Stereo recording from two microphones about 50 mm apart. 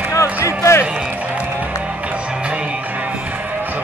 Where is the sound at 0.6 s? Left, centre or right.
Left.